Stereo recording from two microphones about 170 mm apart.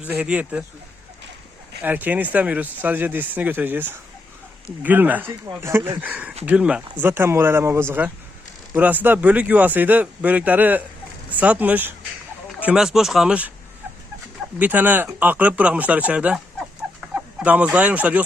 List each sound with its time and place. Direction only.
0.0 s speech: 10° right (ahead or behind)
1.8 s speech: 10° right (ahead or behind)
14.6 s speech: 10° right (ahead or behind)